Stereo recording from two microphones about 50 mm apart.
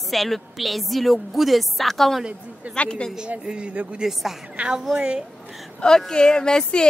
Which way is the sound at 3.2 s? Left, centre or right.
Right.